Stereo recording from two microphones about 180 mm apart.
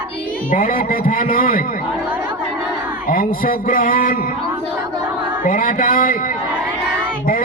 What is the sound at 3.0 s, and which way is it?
A man's voice, 50° left (ahead or behind).